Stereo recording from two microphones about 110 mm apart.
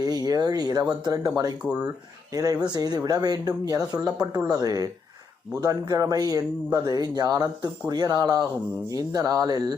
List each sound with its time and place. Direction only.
0.0 s a man's voice: 35° right (ahead or behind)
2.3 s a man's voice: 35° right (ahead or behind)